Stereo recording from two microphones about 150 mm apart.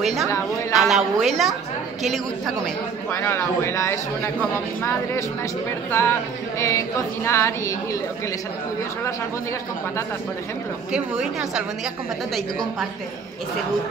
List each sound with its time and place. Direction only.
0.0 s a woman's voice: centre (ahead or behind)
3.1 s a man's voice: 15° left (ahead or behind)
7.2 s a man's voice: 20° left (ahead or behind)
10.9 s a woman's voice: 5° right (ahead or behind)